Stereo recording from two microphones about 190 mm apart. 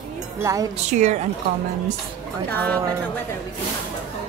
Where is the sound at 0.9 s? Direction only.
40° right (ahead or behind).